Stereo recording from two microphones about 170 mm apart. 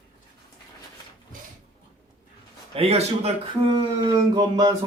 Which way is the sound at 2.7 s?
35° right (ahead or behind).